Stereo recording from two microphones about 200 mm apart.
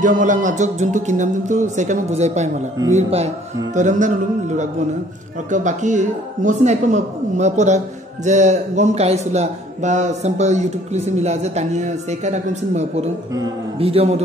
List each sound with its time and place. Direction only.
0.0 s a man's voice: 40° right (ahead or behind)
13.3 s a man's voice: 25° right (ahead or behind)